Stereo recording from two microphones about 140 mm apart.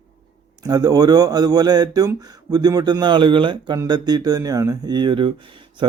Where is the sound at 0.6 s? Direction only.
25° right (ahead or behind).